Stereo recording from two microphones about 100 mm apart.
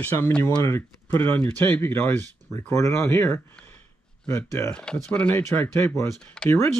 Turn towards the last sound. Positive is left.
turn(degrees=10)  # may be behind; listen again after turning